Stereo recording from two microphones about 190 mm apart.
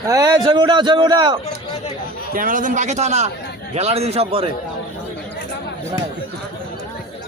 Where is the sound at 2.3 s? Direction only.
45° right (ahead or behind).